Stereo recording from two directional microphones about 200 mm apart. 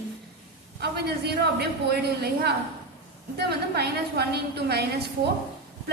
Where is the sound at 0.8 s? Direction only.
55° right (ahead or behind).